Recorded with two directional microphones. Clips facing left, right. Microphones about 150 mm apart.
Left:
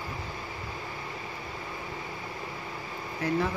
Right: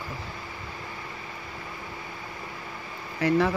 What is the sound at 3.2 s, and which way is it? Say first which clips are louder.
Speech: right 6 dB; 80° right.